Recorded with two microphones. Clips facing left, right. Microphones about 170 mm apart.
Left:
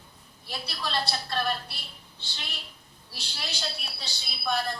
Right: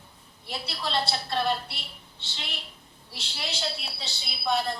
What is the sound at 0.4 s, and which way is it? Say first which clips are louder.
A man's voice: right 2 dB; 25° right (ahead or behind).